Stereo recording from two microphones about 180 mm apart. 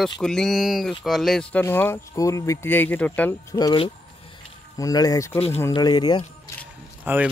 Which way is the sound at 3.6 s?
20° left (ahead or behind).